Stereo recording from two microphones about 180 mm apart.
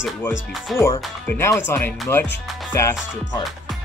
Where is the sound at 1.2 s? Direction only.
10° left (ahead or behind).